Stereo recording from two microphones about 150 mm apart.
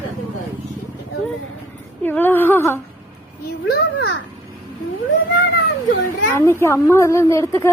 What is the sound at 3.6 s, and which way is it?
Speech, 90° left.